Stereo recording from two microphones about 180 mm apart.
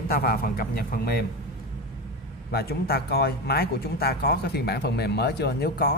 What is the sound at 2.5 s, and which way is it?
Speech, 60° left (ahead or behind).